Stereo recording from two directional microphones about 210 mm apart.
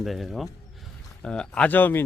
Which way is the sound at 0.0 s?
Centre (ahead or behind).